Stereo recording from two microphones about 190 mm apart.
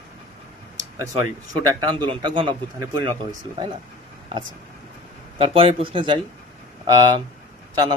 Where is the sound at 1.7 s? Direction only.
25° right (ahead or behind).